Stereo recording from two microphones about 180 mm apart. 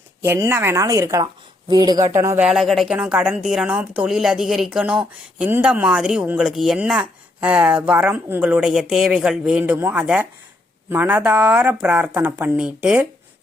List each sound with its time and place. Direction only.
0.2 s speech: 15° right (ahead or behind)